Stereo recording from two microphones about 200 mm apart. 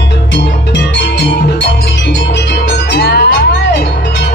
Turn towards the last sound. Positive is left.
turn(degrees=60)  # may be behind; listen again after turning